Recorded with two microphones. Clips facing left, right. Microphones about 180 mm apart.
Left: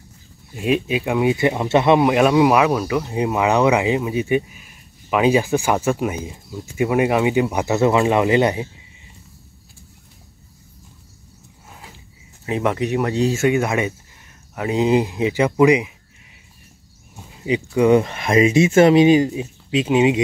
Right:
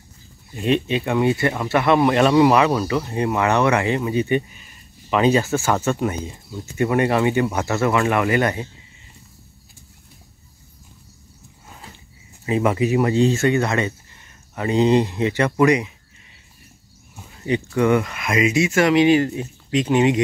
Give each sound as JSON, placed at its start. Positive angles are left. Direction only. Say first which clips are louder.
{"t": 0.6, "sound": "speech", "louder": "even", "side_deg": 5}
{"t": 11.7, "sound": "a sound", "louder": "even", "side_deg": 5}
{"t": 12.4, "sound": "speech", "louder": "right 2 dB", "side_deg": 0}
{"t": 17.4, "sound": "speech", "louder": "left 2 dB", "side_deg": 10}
{"t": 19.1, "sound": "speech", "louder": "left 2 dB", "side_deg": 10}